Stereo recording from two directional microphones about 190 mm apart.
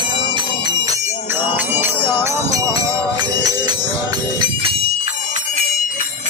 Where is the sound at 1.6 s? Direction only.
15° right (ahead or behind).